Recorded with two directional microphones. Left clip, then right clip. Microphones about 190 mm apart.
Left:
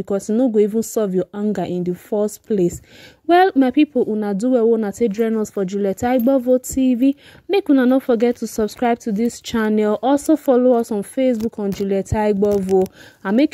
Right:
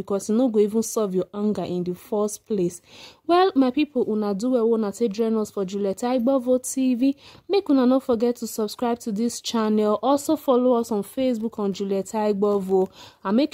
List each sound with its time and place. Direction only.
0.4 s speech: 10° left (ahead or behind)
13.2 s speech: 25° left (ahead or behind)